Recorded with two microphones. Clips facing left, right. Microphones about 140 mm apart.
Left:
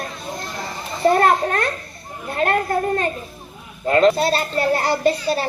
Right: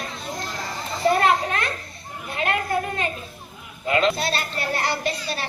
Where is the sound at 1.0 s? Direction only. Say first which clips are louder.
Left 4 dB; 45° left (ahead or behind).